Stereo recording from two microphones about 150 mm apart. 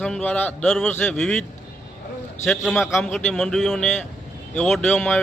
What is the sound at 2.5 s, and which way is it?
A man's voice, centre (ahead or behind).